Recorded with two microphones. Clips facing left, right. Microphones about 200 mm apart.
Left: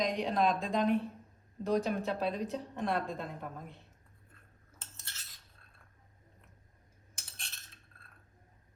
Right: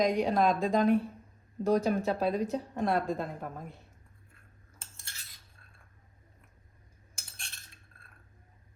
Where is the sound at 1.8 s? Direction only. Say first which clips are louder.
Right 5 dB; 45° right (ahead or behind).